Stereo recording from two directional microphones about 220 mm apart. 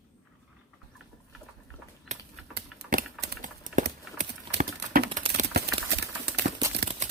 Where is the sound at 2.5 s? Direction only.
45° right (ahead or behind).